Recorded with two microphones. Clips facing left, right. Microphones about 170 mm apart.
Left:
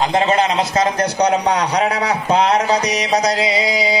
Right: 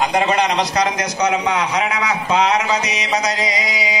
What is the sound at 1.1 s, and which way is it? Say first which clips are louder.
A man's voice: left 2 dB; 35° left (ahead or behind).